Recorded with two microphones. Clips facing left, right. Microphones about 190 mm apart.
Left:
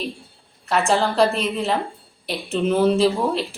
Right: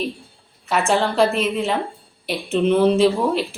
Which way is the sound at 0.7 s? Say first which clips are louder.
Even; centre (ahead or behind).